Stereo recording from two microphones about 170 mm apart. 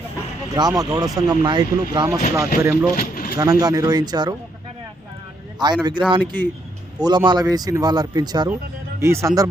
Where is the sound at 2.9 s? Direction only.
55° left (ahead or behind).